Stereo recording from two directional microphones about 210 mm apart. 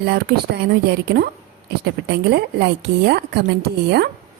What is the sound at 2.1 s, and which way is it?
A woman's voice, 55° right (ahead or behind).